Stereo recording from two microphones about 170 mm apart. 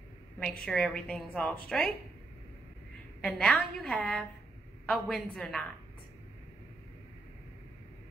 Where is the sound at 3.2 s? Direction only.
5° left (ahead or behind).